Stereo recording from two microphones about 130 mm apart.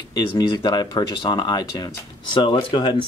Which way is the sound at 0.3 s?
40° left (ahead or behind).